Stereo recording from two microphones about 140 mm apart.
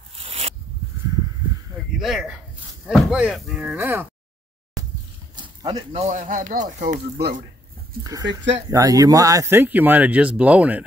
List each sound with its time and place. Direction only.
0.1 s zipper: 45° right (ahead or behind)
2.0 s speech: centre (ahead or behind)
5.3 s a sound: 30° right (ahead or behind)
5.9 s speech: 50° right (ahead or behind)
6.2 s speech: 70° right (ahead or behind)
8.0 s speech: 25° right (ahead or behind); by 10.8 s 10° right (ahead or behind)